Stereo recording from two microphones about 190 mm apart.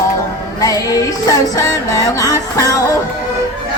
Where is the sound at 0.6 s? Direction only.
20° left (ahead or behind).